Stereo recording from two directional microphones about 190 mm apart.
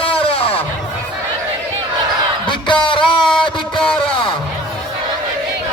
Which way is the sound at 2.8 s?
25° left (ahead or behind).